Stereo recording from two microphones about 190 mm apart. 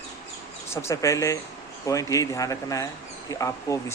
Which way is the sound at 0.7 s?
15° left (ahead or behind).